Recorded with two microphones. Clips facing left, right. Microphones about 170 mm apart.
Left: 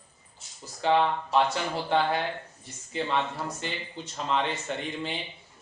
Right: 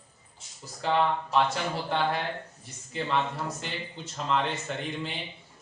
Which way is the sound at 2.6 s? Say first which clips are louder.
Left 1 dB; centre (ahead or behind).